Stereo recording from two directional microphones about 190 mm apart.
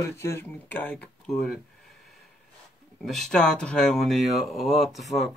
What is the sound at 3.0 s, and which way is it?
Speech, centre (ahead or behind).